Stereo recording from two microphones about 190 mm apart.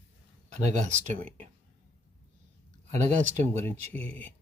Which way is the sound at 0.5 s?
40° right (ahead or behind).